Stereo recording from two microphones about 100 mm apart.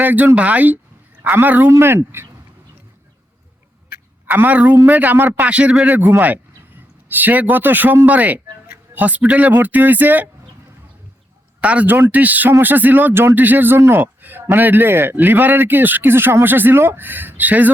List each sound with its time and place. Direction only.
0.0 s a man's voice: 20° right (ahead or behind)
1.7 s a man's voice: 30° right (ahead or behind)
4.3 s a man's voice: 15° right (ahead or behind)
11.6 s a man's voice: 15° right (ahead or behind)